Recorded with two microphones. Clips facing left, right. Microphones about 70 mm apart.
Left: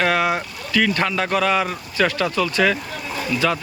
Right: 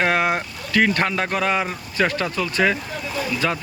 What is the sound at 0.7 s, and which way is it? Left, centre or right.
Speech, right.